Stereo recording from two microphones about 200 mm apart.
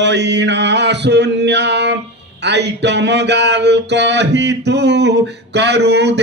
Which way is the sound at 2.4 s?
60° right (ahead or behind).